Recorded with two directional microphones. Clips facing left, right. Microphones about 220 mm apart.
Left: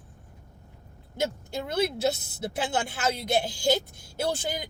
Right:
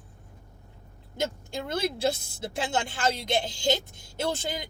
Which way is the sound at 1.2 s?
5° left (ahead or behind).